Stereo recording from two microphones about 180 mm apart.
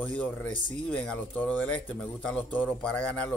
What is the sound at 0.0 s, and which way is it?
A man's voice, 10° left (ahead or behind).